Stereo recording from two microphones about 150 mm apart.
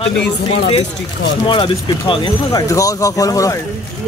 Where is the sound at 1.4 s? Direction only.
30° left (ahead or behind).